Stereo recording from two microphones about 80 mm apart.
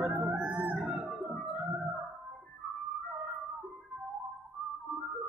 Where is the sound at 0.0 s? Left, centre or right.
Centre.